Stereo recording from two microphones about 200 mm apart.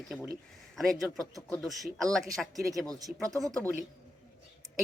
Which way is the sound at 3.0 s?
15° right (ahead or behind).